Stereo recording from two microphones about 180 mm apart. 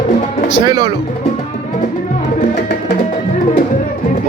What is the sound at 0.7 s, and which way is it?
Speech, 20° right (ahead or behind).